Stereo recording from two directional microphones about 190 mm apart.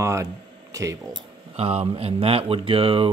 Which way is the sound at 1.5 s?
30° right (ahead or behind).